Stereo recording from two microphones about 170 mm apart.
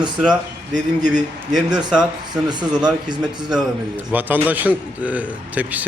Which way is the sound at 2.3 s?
25° right (ahead or behind).